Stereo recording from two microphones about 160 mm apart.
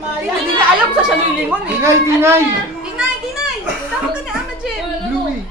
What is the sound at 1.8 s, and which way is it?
Speech, 15° right (ahead or behind).